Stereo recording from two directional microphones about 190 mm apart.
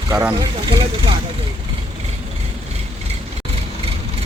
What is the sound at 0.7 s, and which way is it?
Speech, 25° right (ahead or behind).